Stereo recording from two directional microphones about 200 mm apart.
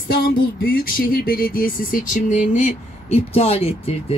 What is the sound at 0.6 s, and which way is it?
Speech, 45° left (ahead or behind).